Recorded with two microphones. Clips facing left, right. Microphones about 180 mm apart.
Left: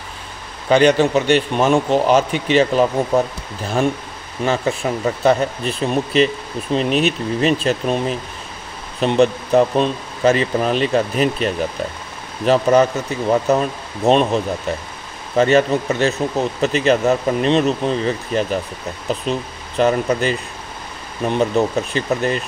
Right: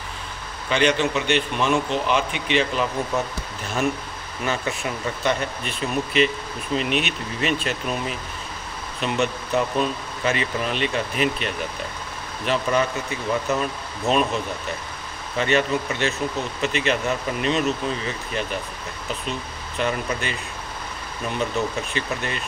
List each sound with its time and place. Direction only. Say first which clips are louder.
0.7 s speech: left 8 dB; 40° left (ahead or behind)
4.4 s speech: left 7 dB; 30° left (ahead or behind)
19.8 s speech: left 9 dB; 40° left (ahead or behind)